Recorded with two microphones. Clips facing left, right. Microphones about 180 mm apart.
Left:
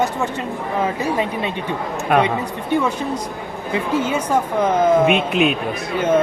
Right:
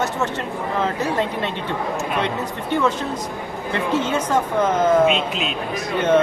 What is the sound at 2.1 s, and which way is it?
Speech, 60° left (ahead or behind).